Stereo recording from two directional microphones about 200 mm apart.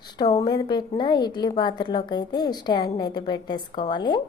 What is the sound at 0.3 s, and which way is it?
A woman's voice, 20° left (ahead or behind).